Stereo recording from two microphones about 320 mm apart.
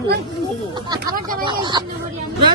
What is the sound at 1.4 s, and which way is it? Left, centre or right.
Speech, centre.